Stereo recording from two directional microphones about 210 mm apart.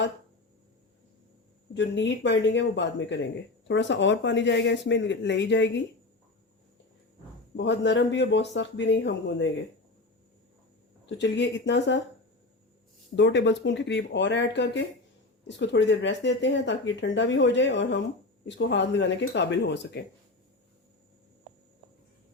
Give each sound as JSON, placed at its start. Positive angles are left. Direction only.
{"t": 1.7, "sound": "speech", "side_deg": 55}
{"t": 7.5, "sound": "speech", "side_deg": 55}
{"t": 11.0, "sound": "speech", "side_deg": 55}
{"t": 13.1, "sound": "speech", "side_deg": 55}